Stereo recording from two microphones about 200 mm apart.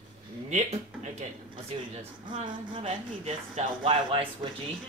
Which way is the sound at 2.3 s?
25° right (ahead or behind).